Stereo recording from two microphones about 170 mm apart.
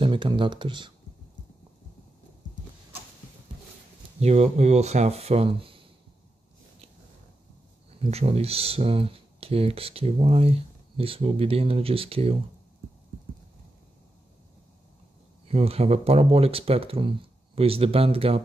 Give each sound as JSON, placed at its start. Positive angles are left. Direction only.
{"t": 0.0, "sound": "speech", "side_deg": -30}
{"t": 4.2, "sound": "speech", "side_deg": -40}
{"t": 8.0, "sound": "speech", "side_deg": -35}
{"t": 15.4, "sound": "speech", "side_deg": -35}